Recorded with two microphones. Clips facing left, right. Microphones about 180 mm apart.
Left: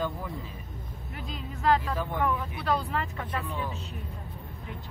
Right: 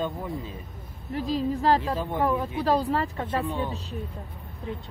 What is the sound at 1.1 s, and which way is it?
Speech, 35° right (ahead or behind).